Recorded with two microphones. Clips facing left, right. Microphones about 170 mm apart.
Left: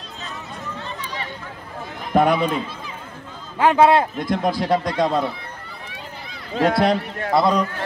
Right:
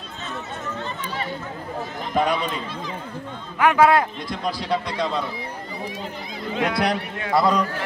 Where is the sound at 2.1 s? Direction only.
55° left (ahead or behind).